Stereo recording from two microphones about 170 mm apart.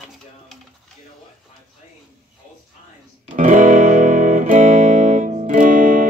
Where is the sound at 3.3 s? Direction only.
45° right (ahead or behind).